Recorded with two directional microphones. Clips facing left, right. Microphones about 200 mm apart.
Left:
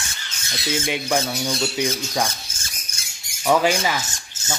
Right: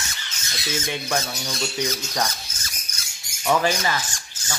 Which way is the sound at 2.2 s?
30° left (ahead or behind).